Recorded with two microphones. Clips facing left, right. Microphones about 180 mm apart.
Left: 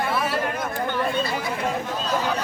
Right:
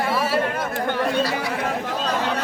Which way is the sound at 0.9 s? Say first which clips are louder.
Right 4 dB; 70° right (ahead or behind).